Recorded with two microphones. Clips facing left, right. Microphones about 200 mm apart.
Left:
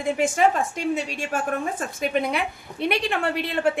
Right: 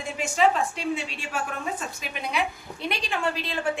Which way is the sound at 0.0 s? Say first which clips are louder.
Left 3 dB; 50° left (ahead or behind).